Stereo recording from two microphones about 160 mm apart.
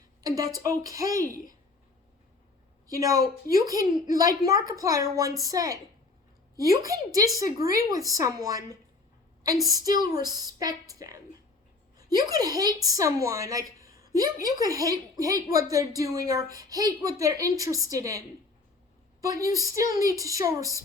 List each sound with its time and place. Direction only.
0.2 s a woman's voice: 25° right (ahead or behind)
2.8 s a woman's voice: 20° right (ahead or behind)
19.2 s a woman's voice: 20° right (ahead or behind)